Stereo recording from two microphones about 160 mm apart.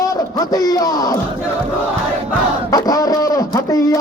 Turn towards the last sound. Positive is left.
turn(degrees=20)  # may be behind; listen again after turning